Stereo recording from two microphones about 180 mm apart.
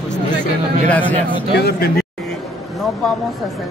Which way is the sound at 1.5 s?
65° left (ahead or behind).